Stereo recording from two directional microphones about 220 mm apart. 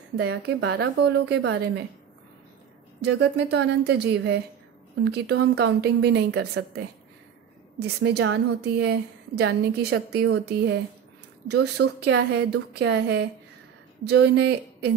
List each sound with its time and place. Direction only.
0.1 s a woman's voice: 50° right (ahead or behind)
3.0 s a woman's voice: 50° right (ahead or behind)